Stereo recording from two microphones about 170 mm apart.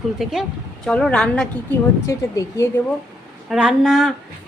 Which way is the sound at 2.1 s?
15° left (ahead or behind).